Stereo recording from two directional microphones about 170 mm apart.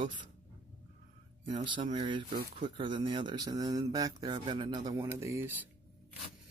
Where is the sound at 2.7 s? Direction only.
30° right (ahead or behind).